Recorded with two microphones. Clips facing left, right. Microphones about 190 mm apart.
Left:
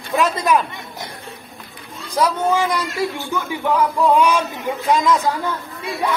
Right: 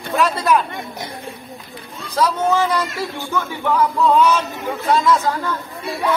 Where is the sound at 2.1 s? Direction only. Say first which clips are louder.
Even; 15° left (ahead or behind).